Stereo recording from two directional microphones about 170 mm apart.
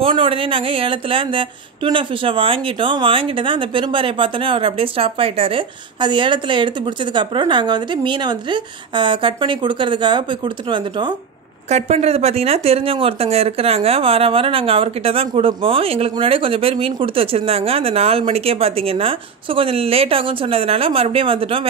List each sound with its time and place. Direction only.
0.0 s speech: 30° right (ahead or behind)
11.7 s speech: 40° right (ahead or behind)